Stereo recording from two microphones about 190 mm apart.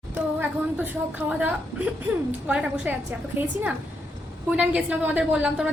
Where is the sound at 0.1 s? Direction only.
10° right (ahead or behind).